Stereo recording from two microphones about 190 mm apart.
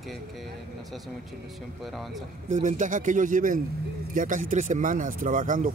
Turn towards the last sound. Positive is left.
turn(degrees=-45)  # may be behind; listen again after turning